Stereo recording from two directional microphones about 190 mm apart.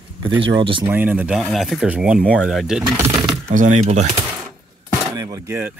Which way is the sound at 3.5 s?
40° right (ahead or behind).